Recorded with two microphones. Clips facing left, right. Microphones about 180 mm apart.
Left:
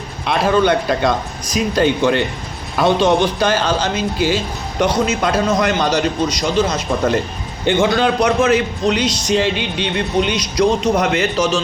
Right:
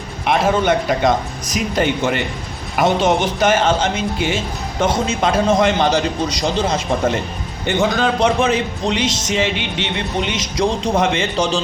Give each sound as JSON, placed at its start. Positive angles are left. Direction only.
{"t": 0.3, "sound": "a man's voice", "side_deg": -20}
{"t": 8.2, "sound": "a man's voice", "side_deg": -25}